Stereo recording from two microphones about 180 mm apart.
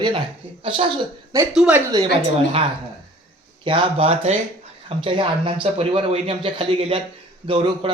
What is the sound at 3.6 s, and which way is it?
A man's voice, 30° right (ahead or behind).